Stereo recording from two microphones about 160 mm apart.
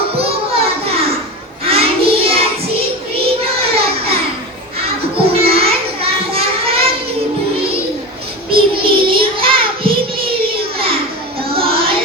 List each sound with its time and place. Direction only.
0.2 s children playing: 40° right (ahead or behind)
1.6 s child singing: 35° right (ahead or behind)
3.6 s child singing: 35° right (ahead or behind)
5.1 s a sound: 35° right (ahead or behind)
8.4 s child singing: 35° right (ahead or behind)
11.5 s music: 35° right (ahead or behind)